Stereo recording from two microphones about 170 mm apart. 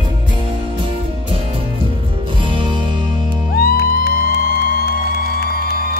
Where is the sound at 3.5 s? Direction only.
60° left (ahead or behind).